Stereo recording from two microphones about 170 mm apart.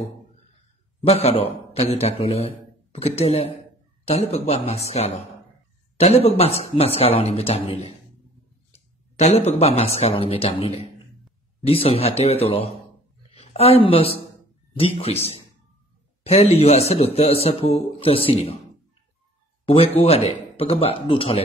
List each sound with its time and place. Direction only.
1.0 s a man's voice: 35° left (ahead or behind)
19.6 s a man's voice: 35° left (ahead or behind)